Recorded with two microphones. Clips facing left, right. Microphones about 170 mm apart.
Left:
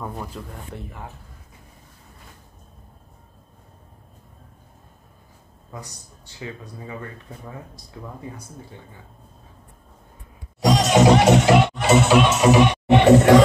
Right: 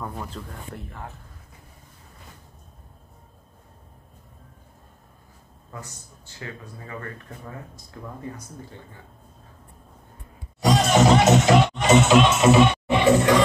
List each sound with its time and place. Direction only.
0.0 s speech: 10° left (ahead or behind)
5.7 s a man's voice: 15° left (ahead or behind)
10.6 s music: 15° left (ahead or behind)
12.9 s music: 65° left (ahead or behind)